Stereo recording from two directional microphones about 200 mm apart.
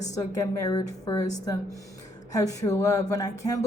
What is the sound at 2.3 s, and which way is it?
Speech, 15° left (ahead or behind).